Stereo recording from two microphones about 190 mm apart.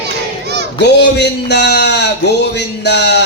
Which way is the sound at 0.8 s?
60° left (ahead or behind).